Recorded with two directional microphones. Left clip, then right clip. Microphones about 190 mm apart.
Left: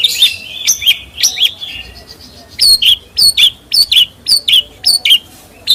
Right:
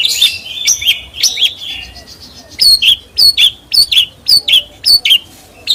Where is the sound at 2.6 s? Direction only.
Centre (ahead or behind).